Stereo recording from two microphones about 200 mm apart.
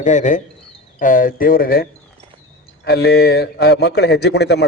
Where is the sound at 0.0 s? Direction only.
40° left (ahead or behind).